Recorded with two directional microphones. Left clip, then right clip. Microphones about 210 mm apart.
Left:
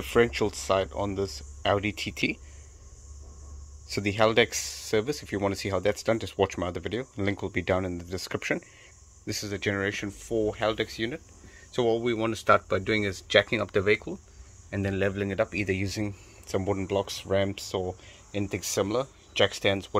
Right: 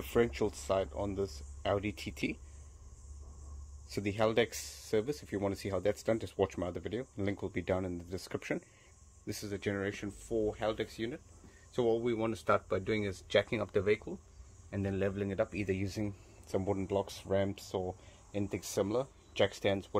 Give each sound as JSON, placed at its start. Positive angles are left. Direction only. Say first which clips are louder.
{"t": 0.0, "sound": "speech", "louder": "left 7 dB", "side_deg": 0}
{"t": 3.8, "sound": "speech", "louder": "left 8 dB", "side_deg": 0}